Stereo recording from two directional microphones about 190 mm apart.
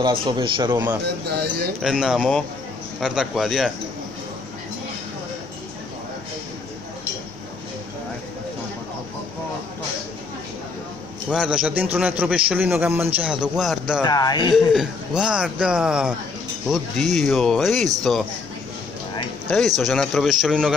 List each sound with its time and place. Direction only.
0.0 s a man's voice: 25° right (ahead or behind)
1.3 s speech: 60° right (ahead or behind)
1.8 s speech: centre (ahead or behind)
11.2 s a man's voice: 5° right (ahead or behind)
14.0 s a man's voice: 20° left (ahead or behind)
14.5 s speech: centre (ahead or behind)
19.8 s speech: centre (ahead or behind)